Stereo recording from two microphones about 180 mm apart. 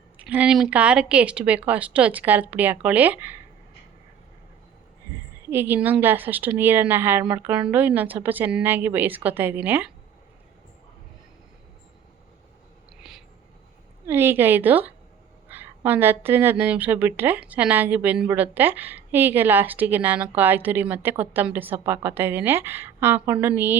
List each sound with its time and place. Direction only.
0.2 s speech: 5° right (ahead or behind)
5.5 s speech: 10° right (ahead or behind)
13.0 s a sound: centre (ahead or behind)
14.1 s speech: 15° right (ahead or behind)